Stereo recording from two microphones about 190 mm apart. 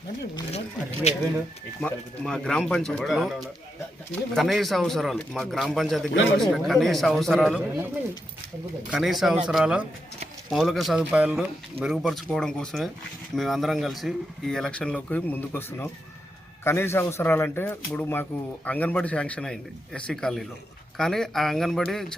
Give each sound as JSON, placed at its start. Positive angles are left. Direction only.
{"t": 1.8, "sound": "speech", "side_deg": 5}
{"t": 8.9, "sound": "speech", "side_deg": 0}